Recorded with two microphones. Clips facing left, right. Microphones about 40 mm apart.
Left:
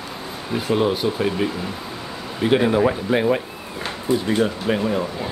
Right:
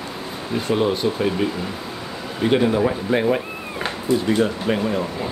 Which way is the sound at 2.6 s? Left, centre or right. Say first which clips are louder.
Left 1 dB; centre.